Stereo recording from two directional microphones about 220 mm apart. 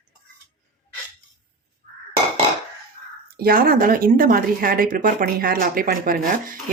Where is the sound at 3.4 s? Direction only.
40° right (ahead or behind).